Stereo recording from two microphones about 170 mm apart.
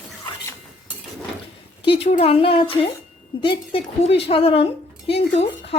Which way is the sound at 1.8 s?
35° left (ahead or behind).